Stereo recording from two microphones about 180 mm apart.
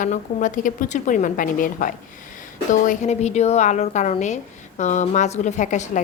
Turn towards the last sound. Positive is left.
turn(degrees=45)  # may be behind; listen again after turning